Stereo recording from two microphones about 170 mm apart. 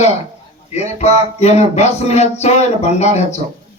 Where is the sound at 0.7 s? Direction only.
40° left (ahead or behind).